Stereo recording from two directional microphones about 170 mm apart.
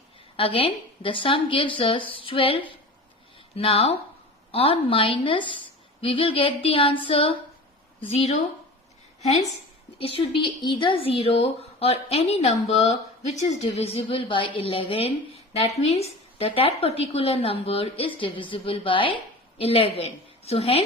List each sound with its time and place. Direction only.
0.3 s speech: 30° left (ahead or behind)